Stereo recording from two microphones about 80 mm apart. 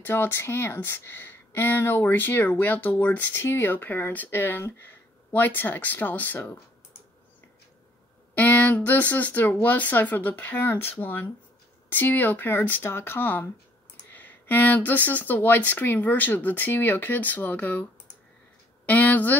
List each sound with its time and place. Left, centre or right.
0.0 s speech: left
8.4 s speech: left
18.9 s speech: centre